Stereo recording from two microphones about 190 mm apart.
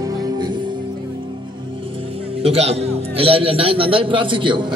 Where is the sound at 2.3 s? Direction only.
30° right (ahead or behind).